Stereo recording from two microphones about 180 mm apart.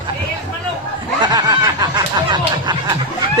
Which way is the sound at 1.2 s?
20° right (ahead or behind).